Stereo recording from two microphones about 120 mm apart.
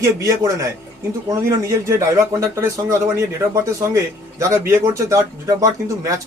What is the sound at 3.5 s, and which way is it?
Speech, 25° right (ahead or behind).